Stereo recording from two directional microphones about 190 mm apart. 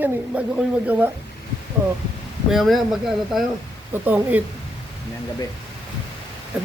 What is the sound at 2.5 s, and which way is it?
A man's voice, centre (ahead or behind).